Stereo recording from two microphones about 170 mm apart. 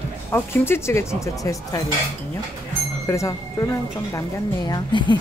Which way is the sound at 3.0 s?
15° left (ahead or behind).